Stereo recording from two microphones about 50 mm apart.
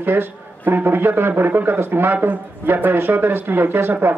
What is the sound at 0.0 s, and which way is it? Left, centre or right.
Speech, right.